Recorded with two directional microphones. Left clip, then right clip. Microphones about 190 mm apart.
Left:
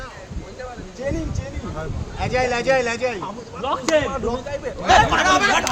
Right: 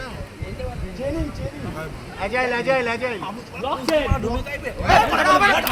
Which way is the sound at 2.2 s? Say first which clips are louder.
Left 1 dB; 35° left (ahead or behind).